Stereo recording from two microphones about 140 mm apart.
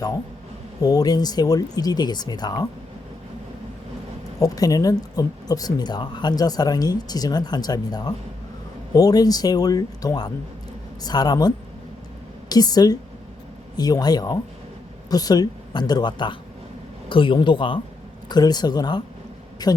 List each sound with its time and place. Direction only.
0.8 s speech: 25° left (ahead or behind)
4.4 s speech: 25° left (ahead or behind)